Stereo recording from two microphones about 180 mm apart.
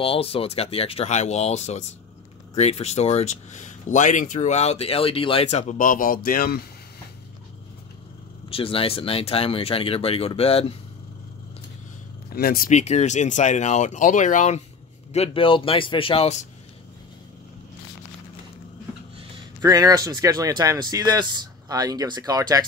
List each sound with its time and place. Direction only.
0.0 s speech: 30° left (ahead or behind); by 6.6 s 55° left (ahead or behind)
8.5 s speech: 30° left (ahead or behind)
12.4 s speech: 55° left (ahead or behind)
15.1 s speech: 30° left (ahead or behind)
19.3 s speech: 20° right (ahead or behind)